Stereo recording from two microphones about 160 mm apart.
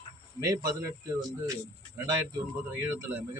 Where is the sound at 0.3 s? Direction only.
20° right (ahead or behind).